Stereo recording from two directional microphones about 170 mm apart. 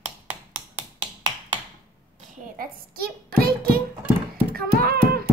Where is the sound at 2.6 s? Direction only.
60° right (ahead or behind).